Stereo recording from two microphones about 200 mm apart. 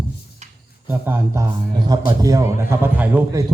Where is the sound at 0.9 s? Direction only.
10° right (ahead or behind).